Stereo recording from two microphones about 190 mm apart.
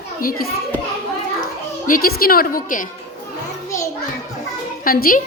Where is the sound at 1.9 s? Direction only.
50° left (ahead or behind).